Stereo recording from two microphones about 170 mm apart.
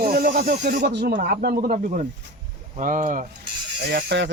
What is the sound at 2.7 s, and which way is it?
Speech, 50° right (ahead or behind).